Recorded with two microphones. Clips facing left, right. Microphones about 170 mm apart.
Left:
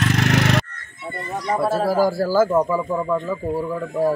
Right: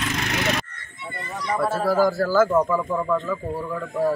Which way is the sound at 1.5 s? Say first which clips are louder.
Left 3 dB; 30° left (ahead or behind).